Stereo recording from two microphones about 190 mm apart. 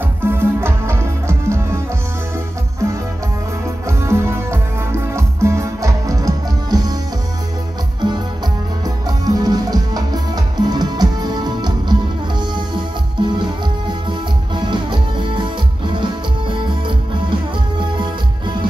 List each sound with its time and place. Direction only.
0.2 s music: 10° right (ahead or behind)
4.0 s music: 15° right (ahead or behind)
8.0 s music: 25° right (ahead or behind)
13.2 s music: 25° right (ahead or behind)
14.5 s music: 25° right (ahead or behind)